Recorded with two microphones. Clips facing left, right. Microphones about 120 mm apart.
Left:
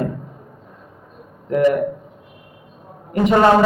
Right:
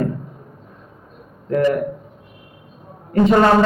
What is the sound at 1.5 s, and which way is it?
Speech, 20° left (ahead or behind).